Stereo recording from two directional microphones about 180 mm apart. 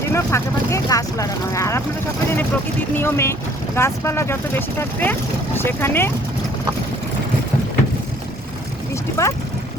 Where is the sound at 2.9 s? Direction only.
10° left (ahead or behind).